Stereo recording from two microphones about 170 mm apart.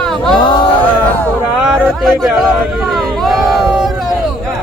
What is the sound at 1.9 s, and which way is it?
Speech, centre (ahead or behind).